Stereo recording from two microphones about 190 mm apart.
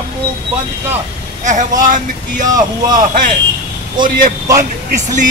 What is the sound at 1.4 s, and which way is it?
Speech, 40° right (ahead or behind).